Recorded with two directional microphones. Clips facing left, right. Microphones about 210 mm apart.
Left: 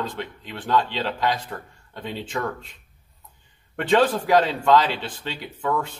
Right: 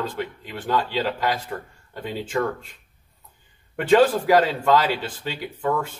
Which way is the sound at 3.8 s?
5° right (ahead or behind).